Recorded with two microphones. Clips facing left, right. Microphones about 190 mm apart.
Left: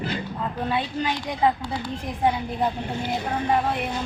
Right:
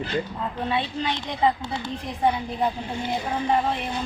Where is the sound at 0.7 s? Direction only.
5° left (ahead or behind).